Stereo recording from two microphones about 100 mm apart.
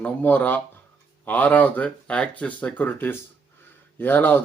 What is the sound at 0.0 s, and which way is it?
Speech, 15° left (ahead or behind).